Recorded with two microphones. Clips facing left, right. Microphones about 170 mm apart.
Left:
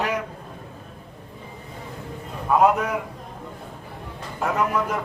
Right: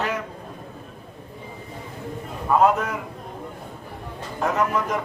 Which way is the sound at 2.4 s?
10° left (ahead or behind).